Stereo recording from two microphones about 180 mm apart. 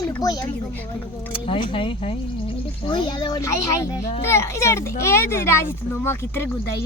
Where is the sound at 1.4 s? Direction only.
30° left (ahead or behind).